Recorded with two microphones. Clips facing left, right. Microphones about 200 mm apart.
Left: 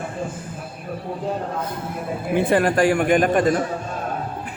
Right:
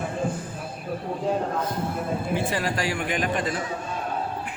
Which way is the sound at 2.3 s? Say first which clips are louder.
Left 12 dB; 55° left (ahead or behind).